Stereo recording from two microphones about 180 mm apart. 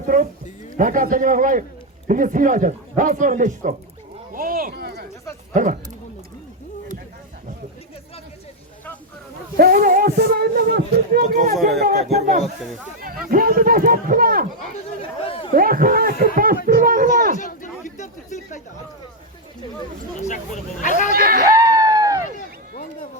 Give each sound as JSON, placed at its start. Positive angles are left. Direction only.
{"t": 0.8, "sound": "a man's voice", "side_deg": -50}
{"t": 4.4, "sound": "a sound", "side_deg": -50}
{"t": 5.5, "sound": "a man's voice", "side_deg": -45}
{"t": 9.6, "sound": "speech", "side_deg": -50}
{"t": 11.5, "sound": "speech", "side_deg": 0}
{"t": 11.9, "sound": "a man's voice", "side_deg": -40}
{"t": 13.3, "sound": "a man's voice", "side_deg": -55}
{"t": 15.5, "sound": "a man's voice", "side_deg": -50}
{"t": 16.7, "sound": "a sound", "side_deg": -50}
{"t": 17.3, "sound": "chatter", "side_deg": 45}
{"t": 20.2, "sound": "speech", "side_deg": 45}
{"t": 21.1, "sound": "speech", "side_deg": -55}
{"t": 21.7, "sound": "a sound", "side_deg": -20}
{"t": 22.4, "sound": "run", "side_deg": 50}